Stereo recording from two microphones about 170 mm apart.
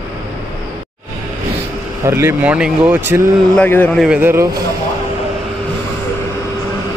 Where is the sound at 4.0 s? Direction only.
5° right (ahead or behind).